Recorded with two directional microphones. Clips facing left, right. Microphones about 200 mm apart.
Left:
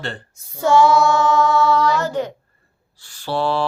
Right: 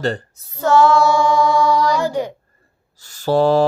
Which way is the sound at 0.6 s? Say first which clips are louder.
Right 1 dB; 10° left (ahead or behind).